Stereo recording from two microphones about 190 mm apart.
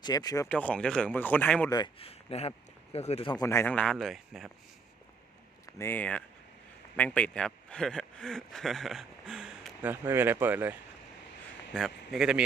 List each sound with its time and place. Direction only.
0.0 s speech: 20° left (ahead or behind)
0.4 s speech: 5° left (ahead or behind)
1.7 s speech: 25° left (ahead or behind)
3.4 s speech: 15° left (ahead or behind)
5.6 s speech: 10° left (ahead or behind)